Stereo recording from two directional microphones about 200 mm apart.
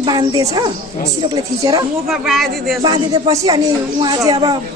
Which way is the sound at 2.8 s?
20° right (ahead or behind).